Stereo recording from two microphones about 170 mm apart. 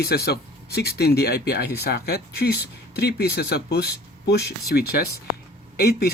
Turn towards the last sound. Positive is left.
turn(degrees=65)  # may be behind; listen again after turning